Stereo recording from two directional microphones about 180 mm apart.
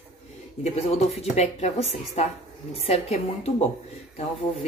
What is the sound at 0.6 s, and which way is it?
Speech, 35° left (ahead or behind).